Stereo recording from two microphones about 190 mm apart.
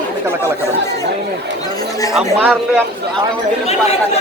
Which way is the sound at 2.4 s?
5° right (ahead or behind).